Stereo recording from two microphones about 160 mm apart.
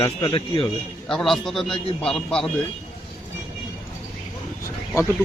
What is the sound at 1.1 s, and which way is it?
A man's voice, centre (ahead or behind).